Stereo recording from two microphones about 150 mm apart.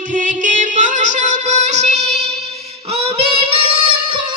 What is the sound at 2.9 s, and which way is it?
Child singing, 40° right (ahead or behind).